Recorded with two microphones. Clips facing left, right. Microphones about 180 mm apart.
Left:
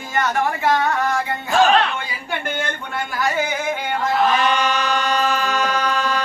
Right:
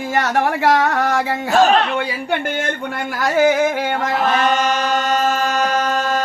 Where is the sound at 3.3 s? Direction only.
80° right.